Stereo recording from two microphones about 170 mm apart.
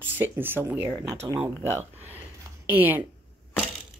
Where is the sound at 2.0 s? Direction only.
10° right (ahead or behind).